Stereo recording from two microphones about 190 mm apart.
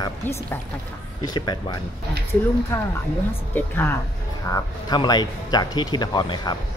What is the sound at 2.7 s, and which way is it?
Speech, 10° left (ahead or behind).